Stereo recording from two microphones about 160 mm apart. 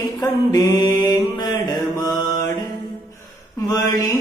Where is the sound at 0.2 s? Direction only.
25° left (ahead or behind).